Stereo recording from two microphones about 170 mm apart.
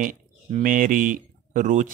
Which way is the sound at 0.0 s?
50° right (ahead or behind).